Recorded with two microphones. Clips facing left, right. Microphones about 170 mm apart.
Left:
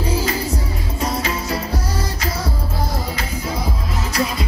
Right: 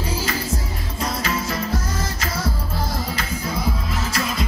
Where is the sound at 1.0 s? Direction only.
35° left (ahead or behind).